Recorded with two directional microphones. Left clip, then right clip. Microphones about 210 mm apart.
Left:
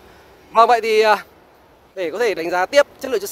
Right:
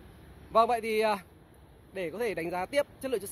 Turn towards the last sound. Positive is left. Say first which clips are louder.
# left 14 dB
turn(degrees=5)  # may be behind; listen again after turning